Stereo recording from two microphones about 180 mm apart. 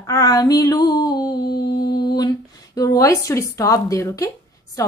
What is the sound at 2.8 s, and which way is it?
A woman's voice, 20° left (ahead or behind).